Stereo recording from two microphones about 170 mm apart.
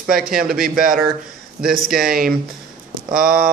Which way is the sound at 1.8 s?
Centre (ahead or behind).